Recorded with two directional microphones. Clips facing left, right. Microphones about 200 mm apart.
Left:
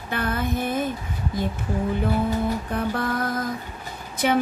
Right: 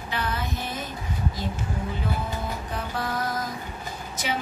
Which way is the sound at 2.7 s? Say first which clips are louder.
Left 5 dB; 55° left (ahead or behind).